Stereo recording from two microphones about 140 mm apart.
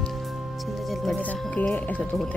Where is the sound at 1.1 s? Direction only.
10° left (ahead or behind).